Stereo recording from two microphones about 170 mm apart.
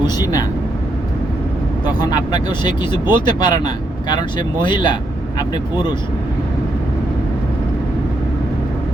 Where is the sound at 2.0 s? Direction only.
25° left (ahead or behind).